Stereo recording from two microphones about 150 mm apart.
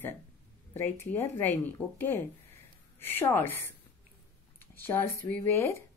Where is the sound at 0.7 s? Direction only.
15° left (ahead or behind).